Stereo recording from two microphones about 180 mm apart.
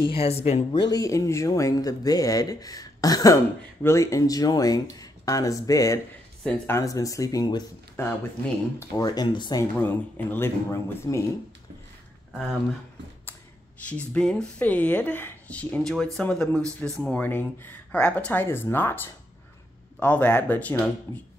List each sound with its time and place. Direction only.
0.1 s speech: 35° left (ahead or behind)
0.8 s speech: 20° left (ahead or behind)
13.8 s speech: 5° left (ahead or behind)
20.0 s speech: 10° left (ahead or behind)